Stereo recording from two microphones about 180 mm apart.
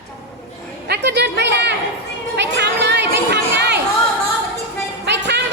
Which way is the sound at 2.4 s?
75° right (ahead or behind).